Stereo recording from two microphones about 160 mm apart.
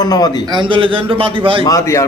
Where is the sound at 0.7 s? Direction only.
35° right (ahead or behind).